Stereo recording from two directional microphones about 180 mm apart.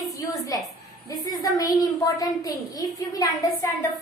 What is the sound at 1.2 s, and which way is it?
A woman's voice, 20° left (ahead or behind).